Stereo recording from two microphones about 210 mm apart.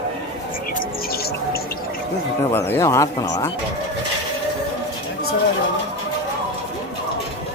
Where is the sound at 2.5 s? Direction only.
10° left (ahead or behind).